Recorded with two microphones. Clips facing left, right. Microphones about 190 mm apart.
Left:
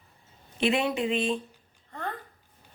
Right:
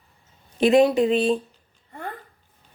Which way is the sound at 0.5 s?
40° right (ahead or behind).